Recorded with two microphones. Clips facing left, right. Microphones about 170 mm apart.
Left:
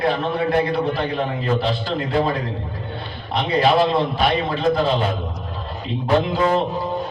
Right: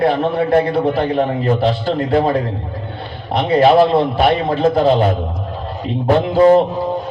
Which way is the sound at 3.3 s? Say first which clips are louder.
Right 6 dB; 55° right (ahead or behind).